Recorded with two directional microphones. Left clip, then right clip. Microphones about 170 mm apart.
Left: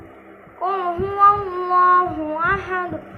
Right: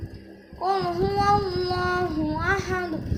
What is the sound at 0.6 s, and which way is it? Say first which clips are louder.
Child singing: left 2 dB; 20° right (ahead or behind).